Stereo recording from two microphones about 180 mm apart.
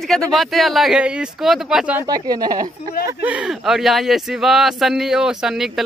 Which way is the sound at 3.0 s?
10° right (ahead or behind).